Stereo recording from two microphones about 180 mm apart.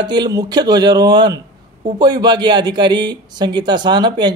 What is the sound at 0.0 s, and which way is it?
A man's voice, 25° right (ahead or behind).